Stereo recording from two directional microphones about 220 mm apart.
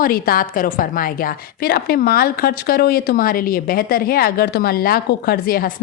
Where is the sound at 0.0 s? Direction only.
40° left (ahead or behind).